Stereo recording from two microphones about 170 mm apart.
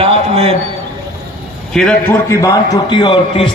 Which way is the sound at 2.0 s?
20° left (ahead or behind).